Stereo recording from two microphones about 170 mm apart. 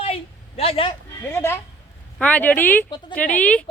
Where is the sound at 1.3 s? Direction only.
15° left (ahead or behind).